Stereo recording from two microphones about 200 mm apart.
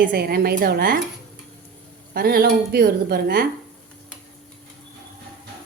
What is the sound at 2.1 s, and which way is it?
Speech, 50° right (ahead or behind).